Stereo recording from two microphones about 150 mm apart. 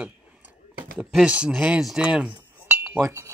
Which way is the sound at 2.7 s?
15° right (ahead or behind).